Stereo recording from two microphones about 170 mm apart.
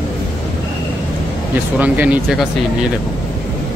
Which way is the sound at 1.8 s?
10° right (ahead or behind).